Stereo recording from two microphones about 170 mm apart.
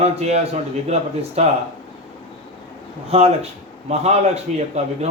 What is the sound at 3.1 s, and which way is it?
A man's voice, 40° right (ahead or behind).